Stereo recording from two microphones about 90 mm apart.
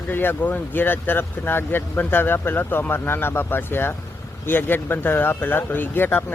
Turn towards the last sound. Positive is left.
turn(degrees=20)  # may be behind; listen again after turning